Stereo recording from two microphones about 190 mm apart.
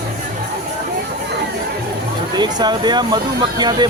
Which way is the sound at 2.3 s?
25° right (ahead or behind).